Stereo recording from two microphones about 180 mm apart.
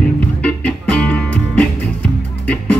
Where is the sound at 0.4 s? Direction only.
10° left (ahead or behind).